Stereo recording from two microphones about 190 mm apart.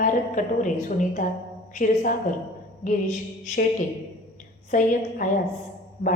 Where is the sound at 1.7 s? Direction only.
45° left (ahead or behind).